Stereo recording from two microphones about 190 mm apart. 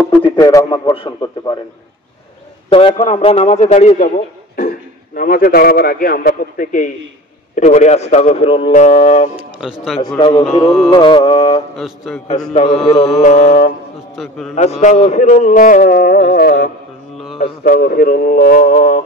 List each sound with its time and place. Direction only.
0.2 s a man's voice: 20° left (ahead or behind)
2.7 s a man's voice: 30° left (ahead or behind)
4.6 s a man's voice: 50° left (ahead or behind); by 9.3 s 35° left (ahead or behind)
9.6 s music: centre (ahead or behind)
10.0 s a man's voice: 25° left (ahead or behind)
10.4 s music: centre (ahead or behind)
10.9 s a man's voice: 25° left (ahead or behind)
11.7 s music: centre (ahead or behind)
12.5 s a man's voice: 30° left (ahead or behind)
14.1 s music: centre (ahead or behind)
14.5 s a man's voice: 35° left (ahead or behind)